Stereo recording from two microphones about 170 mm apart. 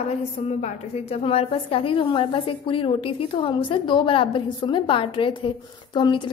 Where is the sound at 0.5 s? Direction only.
45° left (ahead or behind).